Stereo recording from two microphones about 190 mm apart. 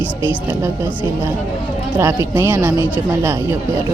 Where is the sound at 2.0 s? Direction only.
10° right (ahead or behind).